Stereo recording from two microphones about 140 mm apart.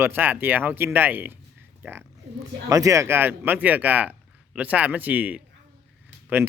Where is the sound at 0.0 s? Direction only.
15° right (ahead or behind).